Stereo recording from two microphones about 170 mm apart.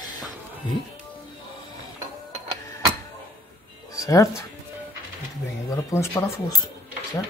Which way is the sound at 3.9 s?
20° left (ahead or behind).